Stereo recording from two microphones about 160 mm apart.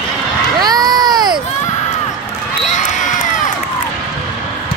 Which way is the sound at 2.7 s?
50° left (ahead or behind).